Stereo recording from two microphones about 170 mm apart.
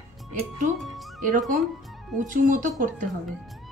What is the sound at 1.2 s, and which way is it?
A woman's voice, 50° right (ahead or behind).